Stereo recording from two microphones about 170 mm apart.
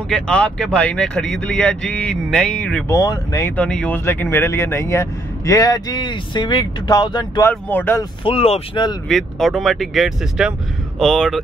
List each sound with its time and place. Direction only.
0.1 s speech: 5° left (ahead or behind)
3.0 s speech: 20° left (ahead or behind)
7.4 s speech: 10° left (ahead or behind)
8.0 s speech: 30° left (ahead or behind)
9.1 s speech: centre (ahead or behind)